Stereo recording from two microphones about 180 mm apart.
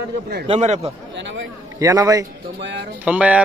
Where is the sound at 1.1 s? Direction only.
90° right.